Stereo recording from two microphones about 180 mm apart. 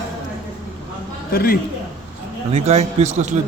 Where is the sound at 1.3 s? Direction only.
55° left (ahead or behind).